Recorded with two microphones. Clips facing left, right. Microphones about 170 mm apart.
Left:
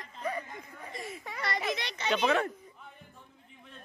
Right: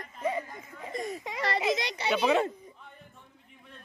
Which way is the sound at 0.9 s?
40° right (ahead or behind).